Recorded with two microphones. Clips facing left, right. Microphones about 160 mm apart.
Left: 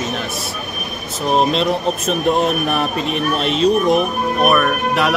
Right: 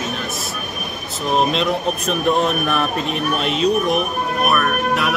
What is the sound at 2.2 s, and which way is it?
Speech, 35° left (ahead or behind).